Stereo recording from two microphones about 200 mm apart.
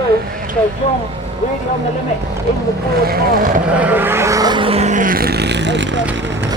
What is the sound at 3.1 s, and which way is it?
Speech, 45° right (ahead or behind).